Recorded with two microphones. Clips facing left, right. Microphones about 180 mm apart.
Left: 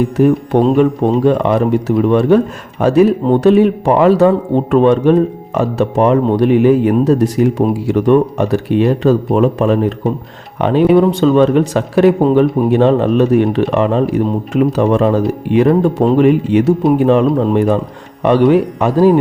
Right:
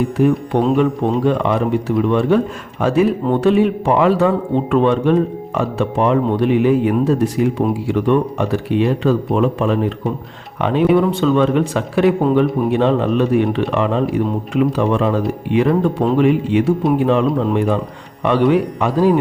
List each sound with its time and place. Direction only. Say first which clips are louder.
0.2 s a man's voice: left 4 dB; 45° left (ahead or behind)